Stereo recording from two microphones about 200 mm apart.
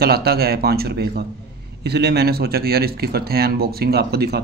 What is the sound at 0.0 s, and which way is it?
Speech, 50° right (ahead or behind).